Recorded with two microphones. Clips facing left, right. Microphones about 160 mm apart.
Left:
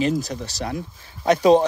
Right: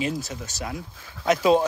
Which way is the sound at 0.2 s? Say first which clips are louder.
Left 5 dB; 35° left (ahead or behind).